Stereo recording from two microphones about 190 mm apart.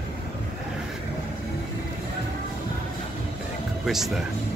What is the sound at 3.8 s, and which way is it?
Speech, centre (ahead or behind).